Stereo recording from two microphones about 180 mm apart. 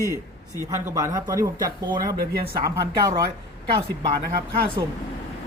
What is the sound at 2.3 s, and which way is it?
Speech, 60° right (ahead or behind).